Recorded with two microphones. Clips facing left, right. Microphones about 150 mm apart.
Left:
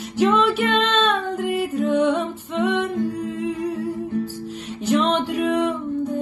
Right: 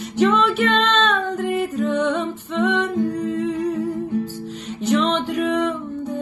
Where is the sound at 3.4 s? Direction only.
10° left (ahead or behind).